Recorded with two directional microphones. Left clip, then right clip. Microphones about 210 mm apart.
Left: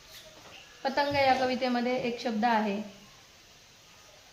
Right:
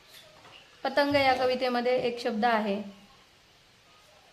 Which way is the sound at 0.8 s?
45° right (ahead or behind).